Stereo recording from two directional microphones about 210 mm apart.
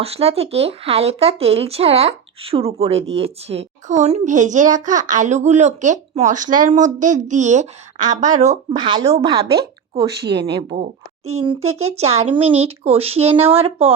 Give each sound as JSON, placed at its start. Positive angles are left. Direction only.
{"t": 0.0, "sound": "a woman's voice", "side_deg": -30}
{"t": 8.7, "sound": "speech", "side_deg": -20}
{"t": 10.3, "sound": "a woman's voice", "side_deg": -25}